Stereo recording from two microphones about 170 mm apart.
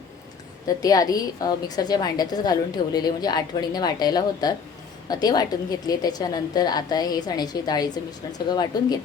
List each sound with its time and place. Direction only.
0.8 s a woman's voice: 20° left (ahead or behind)